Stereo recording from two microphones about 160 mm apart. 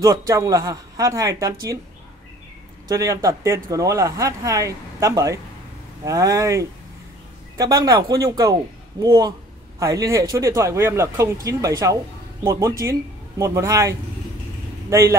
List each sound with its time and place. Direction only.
0.0 s speech: 20° right (ahead or behind)
2.9 s speech: 20° right (ahead or behind)